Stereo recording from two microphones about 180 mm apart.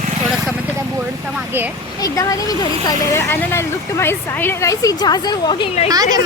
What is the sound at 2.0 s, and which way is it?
Speech, 20° left (ahead or behind).